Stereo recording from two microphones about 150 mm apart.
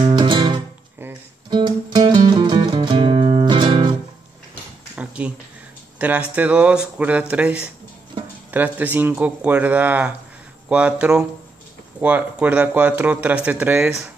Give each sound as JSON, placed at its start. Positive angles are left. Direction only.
{"t": 0.0, "sound": "music", "side_deg": -30}
{"t": 3.4, "sound": "music", "side_deg": -30}
{"t": 4.9, "sound": "a sound", "side_deg": -10}
{"t": 5.9, "sound": "speech", "side_deg": -10}